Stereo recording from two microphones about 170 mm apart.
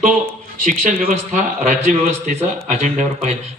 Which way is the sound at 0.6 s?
50° right (ahead or behind).